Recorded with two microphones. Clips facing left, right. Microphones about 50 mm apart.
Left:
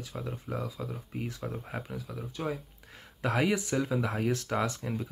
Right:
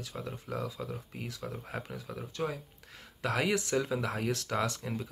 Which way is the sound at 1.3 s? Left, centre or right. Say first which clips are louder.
Left 3 dB; left.